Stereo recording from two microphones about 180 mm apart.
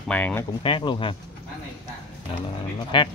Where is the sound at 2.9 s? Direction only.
30° left (ahead or behind).